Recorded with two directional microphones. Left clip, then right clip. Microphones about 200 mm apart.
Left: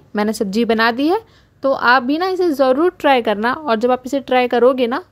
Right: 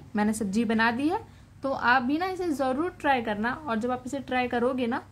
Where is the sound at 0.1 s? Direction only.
50° left (ahead or behind).